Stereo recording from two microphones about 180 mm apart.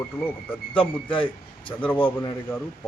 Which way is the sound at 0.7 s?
30° left (ahead or behind).